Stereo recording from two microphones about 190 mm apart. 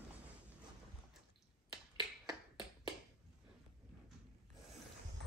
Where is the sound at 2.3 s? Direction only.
25° right (ahead or behind).